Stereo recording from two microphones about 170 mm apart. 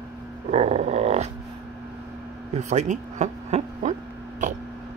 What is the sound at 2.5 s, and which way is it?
Speech, 45° right (ahead or behind).